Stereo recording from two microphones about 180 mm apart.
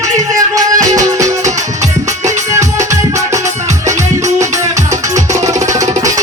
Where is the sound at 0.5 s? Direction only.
20° right (ahead or behind).